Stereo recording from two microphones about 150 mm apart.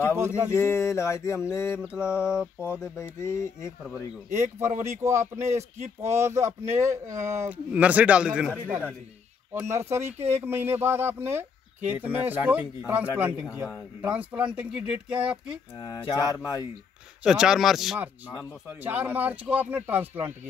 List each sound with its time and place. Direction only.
0.5 s speech: 15° left (ahead or behind)
1.8 s speech: 10° right (ahead or behind)
2.6 s speech: 15° left (ahead or behind)
4.3 s speech: 15° right (ahead or behind)
7.4 s speech: 10° right (ahead or behind)
15.8 s mantra: 25° left (ahead or behind)
17.2 s speech: 5° right (ahead or behind)